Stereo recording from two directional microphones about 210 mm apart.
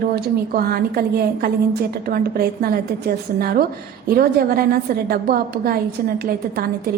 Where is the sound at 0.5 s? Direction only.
45° right (ahead or behind).